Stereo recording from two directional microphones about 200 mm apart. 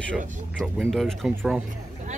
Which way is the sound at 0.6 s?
5° left (ahead or behind).